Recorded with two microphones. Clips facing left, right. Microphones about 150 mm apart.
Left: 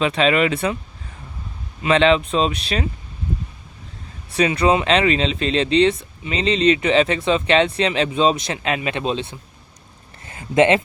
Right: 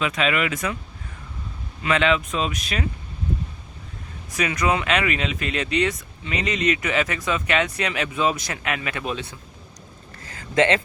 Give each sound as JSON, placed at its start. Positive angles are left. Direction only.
{"t": 0.0, "sound": "speech", "side_deg": 30}
{"t": 1.8, "sound": "speech", "side_deg": 30}
{"t": 4.3, "sound": "speech", "side_deg": 30}
{"t": 10.2, "sound": "a sound", "side_deg": 25}